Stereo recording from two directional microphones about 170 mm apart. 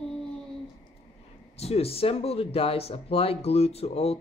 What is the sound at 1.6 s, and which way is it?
Speech, 35° left (ahead or behind).